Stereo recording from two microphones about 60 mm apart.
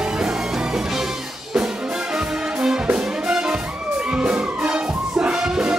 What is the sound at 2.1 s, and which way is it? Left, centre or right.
Brass instrument, centre.